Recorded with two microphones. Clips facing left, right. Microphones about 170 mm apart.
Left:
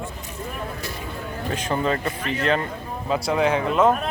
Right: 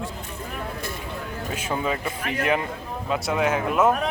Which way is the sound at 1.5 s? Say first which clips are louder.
Left 3 dB; 5° right (ahead or behind).